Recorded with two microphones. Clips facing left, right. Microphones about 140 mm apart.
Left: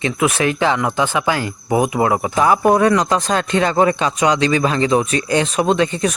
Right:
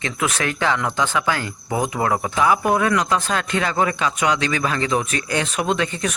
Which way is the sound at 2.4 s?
40° left (ahead or behind).